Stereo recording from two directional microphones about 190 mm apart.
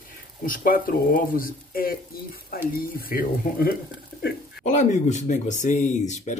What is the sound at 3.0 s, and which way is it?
Speech, 50° left (ahead or behind).